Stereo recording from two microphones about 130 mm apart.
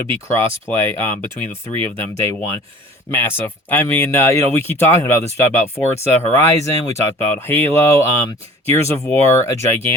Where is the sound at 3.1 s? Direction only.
15° left (ahead or behind).